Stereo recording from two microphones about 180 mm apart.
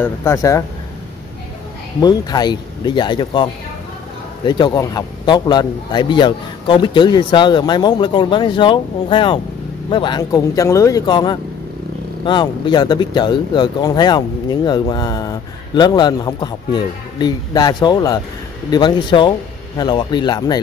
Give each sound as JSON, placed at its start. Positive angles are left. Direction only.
{"t": 0.0, "sound": "speech", "side_deg": 15}
{"t": 2.0, "sound": "speech", "side_deg": 20}
{"t": 4.5, "sound": "speech", "side_deg": 25}